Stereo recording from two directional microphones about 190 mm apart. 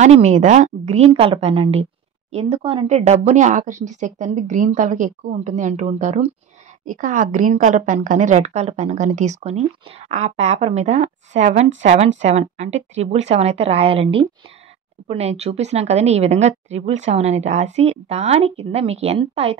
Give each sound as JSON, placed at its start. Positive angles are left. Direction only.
{"t": 0.0, "sound": "a woman's voice", "side_deg": -40}